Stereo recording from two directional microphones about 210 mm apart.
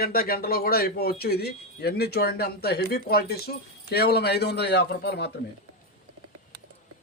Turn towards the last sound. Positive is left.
turn(degrees=50)  # may be behind; listen again after turning